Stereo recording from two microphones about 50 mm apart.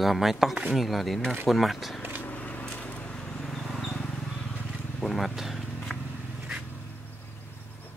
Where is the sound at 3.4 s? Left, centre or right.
Centre.